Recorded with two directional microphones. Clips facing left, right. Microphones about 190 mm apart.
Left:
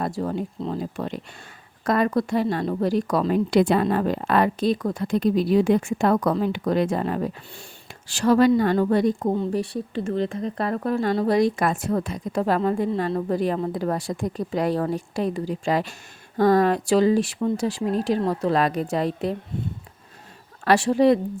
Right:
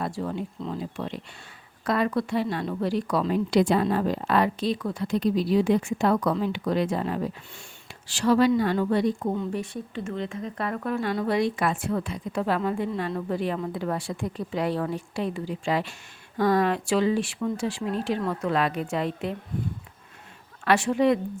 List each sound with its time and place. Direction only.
0.0 s a woman's voice: 40° left (ahead or behind)
20.7 s a woman's voice: 35° left (ahead or behind)